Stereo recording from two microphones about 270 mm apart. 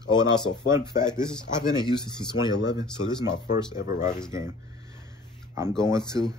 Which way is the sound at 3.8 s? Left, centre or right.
Left.